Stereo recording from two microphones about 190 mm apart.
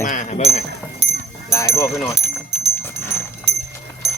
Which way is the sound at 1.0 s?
65° right (ahead or behind).